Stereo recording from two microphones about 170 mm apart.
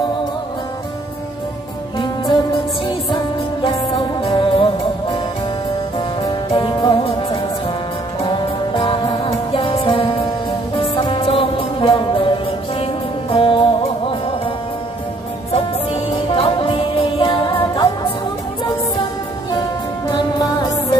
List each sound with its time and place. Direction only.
3.6 s music: 30° left (ahead or behind)
6.2 s music: 30° left (ahead or behind)
8.7 s music: 30° left (ahead or behind)
15.5 s music: 35° left (ahead or behind)
20.1 s music: 25° left (ahead or behind)